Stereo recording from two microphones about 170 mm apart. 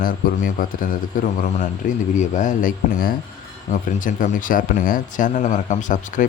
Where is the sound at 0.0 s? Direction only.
55° left (ahead or behind).